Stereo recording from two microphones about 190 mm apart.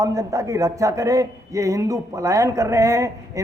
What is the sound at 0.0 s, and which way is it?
A man's voice, 20° right (ahead or behind).